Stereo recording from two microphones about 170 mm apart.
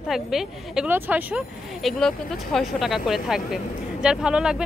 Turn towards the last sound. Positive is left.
turn(degrees=-5)  # may be behind; listen again after turning